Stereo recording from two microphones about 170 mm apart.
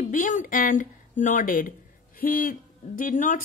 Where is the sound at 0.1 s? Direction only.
50° left (ahead or behind).